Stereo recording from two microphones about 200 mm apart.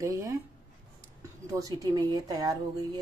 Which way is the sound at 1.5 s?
15° right (ahead or behind).